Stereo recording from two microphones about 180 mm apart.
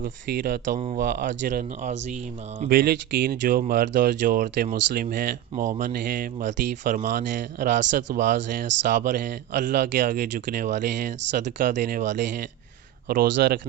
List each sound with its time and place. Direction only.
0.9 s speech: 60° right (ahead or behind)
1.5 s speech: 45° right (ahead or behind)
2.6 s speech: 55° right (ahead or behind)
5.6 s speech: 45° right (ahead or behind); by 10.2 s 65° right (ahead or behind)
10.5 s speech: 45° right (ahead or behind)
13.1 s speech: 55° right (ahead or behind)